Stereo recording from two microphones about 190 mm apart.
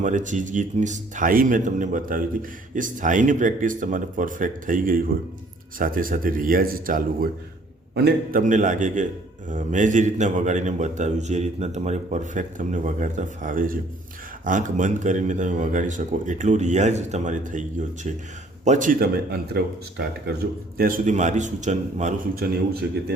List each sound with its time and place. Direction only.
0.0 s speech: 40° right (ahead or behind)
22.4 s speech: 55° right (ahead or behind)